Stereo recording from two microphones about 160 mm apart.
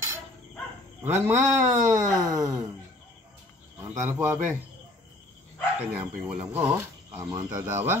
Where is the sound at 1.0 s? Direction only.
15° right (ahead or behind).